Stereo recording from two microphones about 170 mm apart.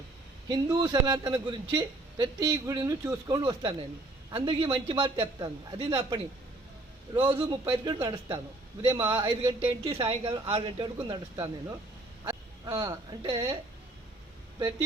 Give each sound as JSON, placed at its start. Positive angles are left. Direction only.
{"t": 0.4, "sound": "a man's voice", "side_deg": -20}
{"t": 11.1, "sound": "a man's voice", "side_deg": -20}